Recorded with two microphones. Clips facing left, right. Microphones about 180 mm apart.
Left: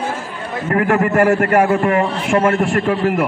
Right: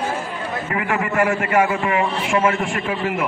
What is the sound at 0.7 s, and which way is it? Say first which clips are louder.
A man's voice: left 9 dB; 50° left (ahead or behind).